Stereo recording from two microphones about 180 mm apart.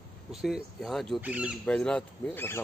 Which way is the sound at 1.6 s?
5° left (ahead or behind).